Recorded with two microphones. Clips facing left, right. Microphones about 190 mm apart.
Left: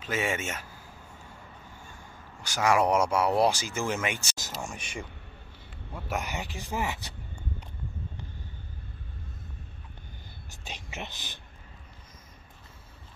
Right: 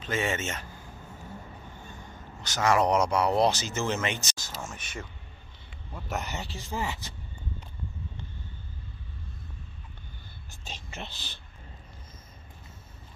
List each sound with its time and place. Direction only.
0.0 s speech: 10° left (ahead or behind)
1.9 s speech: 10° left (ahead or behind)
4.6 s a sound: 10° left (ahead or behind)
5.9 s speech: 10° left (ahead or behind)
10.5 s whispering: 15° left (ahead or behind)